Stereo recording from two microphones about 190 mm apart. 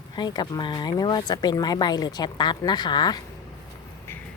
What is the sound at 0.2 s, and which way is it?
Speech, 20° left (ahead or behind).